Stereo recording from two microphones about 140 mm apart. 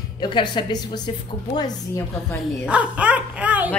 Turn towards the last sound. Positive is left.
turn(degrees=-10)  # may be behind; listen again after turning